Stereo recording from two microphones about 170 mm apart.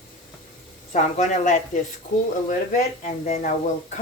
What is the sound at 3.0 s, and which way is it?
Speech, 45° left (ahead or behind).